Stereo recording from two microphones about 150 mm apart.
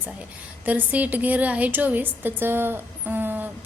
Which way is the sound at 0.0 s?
10° right (ahead or behind).